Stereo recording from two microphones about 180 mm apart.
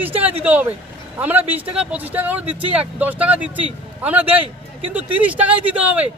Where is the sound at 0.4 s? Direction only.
10° right (ahead or behind).